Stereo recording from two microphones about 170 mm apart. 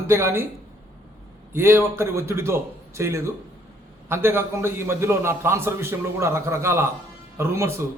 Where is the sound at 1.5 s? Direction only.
15° right (ahead or behind).